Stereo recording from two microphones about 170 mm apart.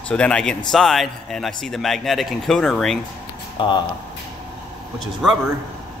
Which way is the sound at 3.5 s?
30° left (ahead or behind).